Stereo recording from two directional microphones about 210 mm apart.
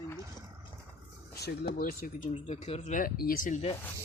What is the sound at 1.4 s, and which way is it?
Speech, 45° left (ahead or behind).